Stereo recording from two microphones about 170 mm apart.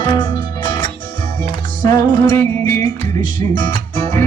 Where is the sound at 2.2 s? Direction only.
15° left (ahead or behind).